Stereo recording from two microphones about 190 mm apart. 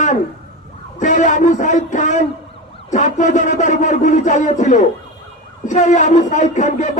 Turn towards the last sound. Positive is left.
turn(degrees=40)  # may be behind; listen again after turning